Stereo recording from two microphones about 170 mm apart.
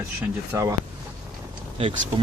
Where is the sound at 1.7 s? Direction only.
35° right (ahead or behind).